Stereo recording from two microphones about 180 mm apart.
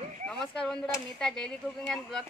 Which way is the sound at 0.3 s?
5° left (ahead or behind).